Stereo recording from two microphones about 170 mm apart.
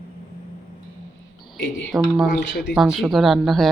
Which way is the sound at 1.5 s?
70° left (ahead or behind).